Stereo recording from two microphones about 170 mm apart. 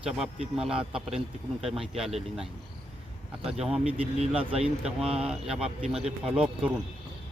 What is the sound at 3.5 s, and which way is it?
Speech, 5° right (ahead or behind).